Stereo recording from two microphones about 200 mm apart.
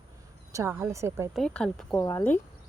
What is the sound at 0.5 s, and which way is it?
Speech, 15° right (ahead or behind).